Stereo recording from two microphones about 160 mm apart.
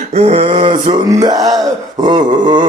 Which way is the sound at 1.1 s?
20° right (ahead or behind).